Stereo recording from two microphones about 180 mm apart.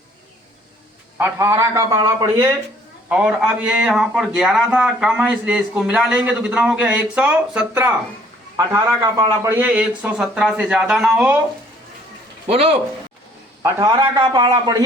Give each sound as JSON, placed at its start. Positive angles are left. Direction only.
{"t": 1.2, "sound": "a man's voice", "side_deg": -15}
{"t": 12.5, "sound": "speech", "side_deg": -35}
{"t": 13.6, "sound": "a man's voice", "side_deg": -15}